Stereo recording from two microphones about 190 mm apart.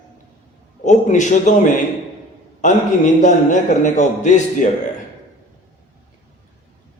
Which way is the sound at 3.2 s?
40° left (ahead or behind).